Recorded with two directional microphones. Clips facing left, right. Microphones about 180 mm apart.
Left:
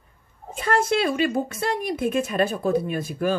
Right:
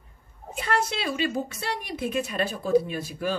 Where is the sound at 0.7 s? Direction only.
50° left (ahead or behind).